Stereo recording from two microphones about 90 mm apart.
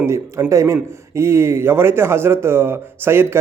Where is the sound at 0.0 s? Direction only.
30° right (ahead or behind).